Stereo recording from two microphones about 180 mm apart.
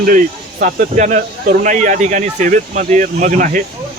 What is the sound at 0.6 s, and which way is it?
Speech, 45° right (ahead or behind).